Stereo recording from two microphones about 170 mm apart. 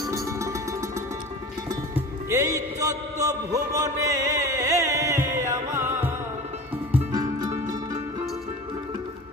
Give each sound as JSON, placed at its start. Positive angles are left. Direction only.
{"t": 0.0, "sound": "music", "side_deg": -20}
{"t": 2.0, "sound": "music", "side_deg": -20}